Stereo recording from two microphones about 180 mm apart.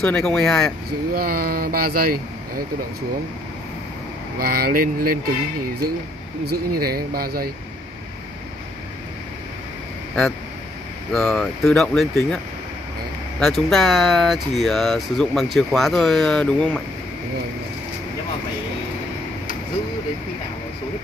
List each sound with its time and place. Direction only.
0.0 s speech: 5° left (ahead or behind)
1.1 s speech: 55° right (ahead or behind)
4.4 s speech: 55° right (ahead or behind)
6.4 s speech: 60° right (ahead or behind)
11.1 s speech: centre (ahead or behind)
13.4 s speech: centre (ahead or behind)